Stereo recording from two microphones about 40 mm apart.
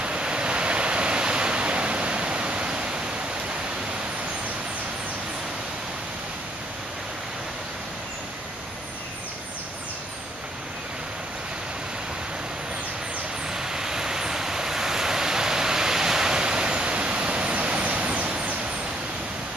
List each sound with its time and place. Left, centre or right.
0.0 s waves: right
13.5 s vehicle: centre; by 18.5 s right